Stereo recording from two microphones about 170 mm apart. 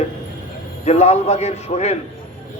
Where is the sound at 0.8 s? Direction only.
40° left (ahead or behind).